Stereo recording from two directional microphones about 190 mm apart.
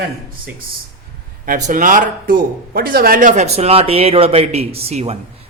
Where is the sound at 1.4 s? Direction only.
45° right (ahead or behind).